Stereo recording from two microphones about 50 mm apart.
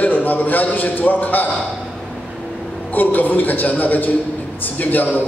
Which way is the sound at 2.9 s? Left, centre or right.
Left.